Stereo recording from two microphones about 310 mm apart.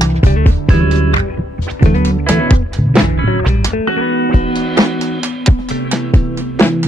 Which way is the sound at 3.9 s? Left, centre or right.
Left.